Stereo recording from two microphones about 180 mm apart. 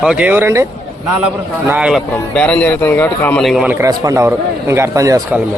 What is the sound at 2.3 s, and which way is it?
Speech, 5° left (ahead or behind).